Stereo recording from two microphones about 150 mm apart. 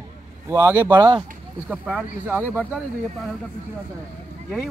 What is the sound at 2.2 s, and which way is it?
Speech, 10° right (ahead or behind).